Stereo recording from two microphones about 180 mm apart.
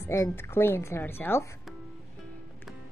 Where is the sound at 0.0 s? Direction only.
15° left (ahead or behind).